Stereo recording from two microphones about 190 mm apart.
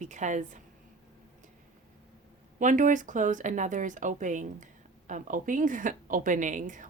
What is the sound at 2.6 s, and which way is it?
A woman's voice, 40° right (ahead or behind).